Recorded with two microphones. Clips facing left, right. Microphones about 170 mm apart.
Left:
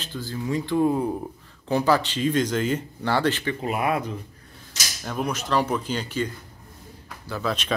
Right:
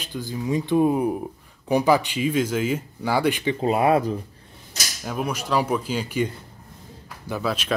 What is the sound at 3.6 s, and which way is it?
Speech, 30° right (ahead or behind).